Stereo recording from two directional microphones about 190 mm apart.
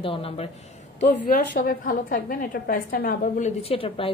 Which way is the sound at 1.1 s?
50° left (ahead or behind).